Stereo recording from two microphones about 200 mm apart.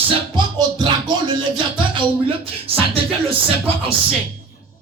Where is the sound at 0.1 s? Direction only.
20° right (ahead or behind).